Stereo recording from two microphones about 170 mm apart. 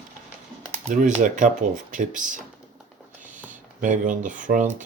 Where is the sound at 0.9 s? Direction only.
50° right (ahead or behind).